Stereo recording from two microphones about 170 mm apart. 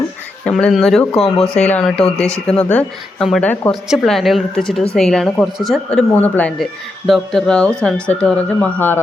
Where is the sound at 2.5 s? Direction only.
10° left (ahead or behind).